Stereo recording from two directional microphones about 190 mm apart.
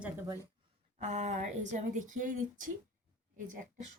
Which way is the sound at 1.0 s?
35° right (ahead or behind).